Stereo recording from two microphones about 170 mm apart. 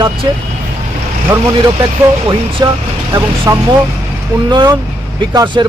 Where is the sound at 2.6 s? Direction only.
20° right (ahead or behind).